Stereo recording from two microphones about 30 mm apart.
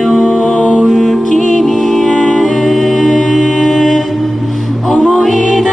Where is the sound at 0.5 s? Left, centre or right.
Left.